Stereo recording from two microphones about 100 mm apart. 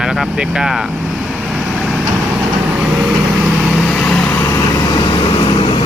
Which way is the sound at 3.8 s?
5° left (ahead or behind).